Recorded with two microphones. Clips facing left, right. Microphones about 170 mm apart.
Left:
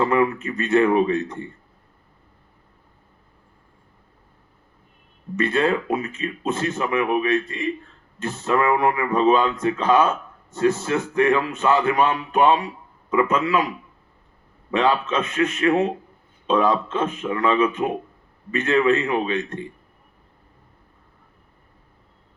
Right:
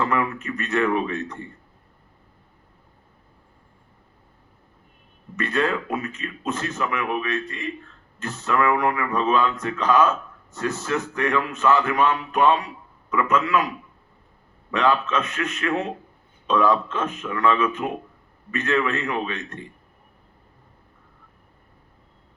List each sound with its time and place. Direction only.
0.0 s speech: 30° left (ahead or behind)
5.4 s a man's voice: 30° left (ahead or behind)
14.7 s speech: 30° left (ahead or behind)